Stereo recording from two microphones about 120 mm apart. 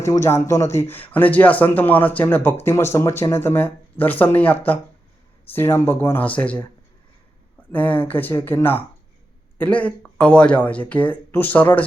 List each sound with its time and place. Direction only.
0.0 s speech: 25° left (ahead or behind)
7.7 s speech: 15° left (ahead or behind)